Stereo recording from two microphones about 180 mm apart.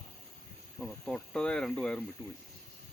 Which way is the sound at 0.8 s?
5° left (ahead or behind).